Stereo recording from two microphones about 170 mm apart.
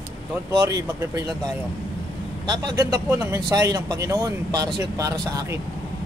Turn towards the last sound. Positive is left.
turn(degrees=-20)  # may be behind; listen again after turning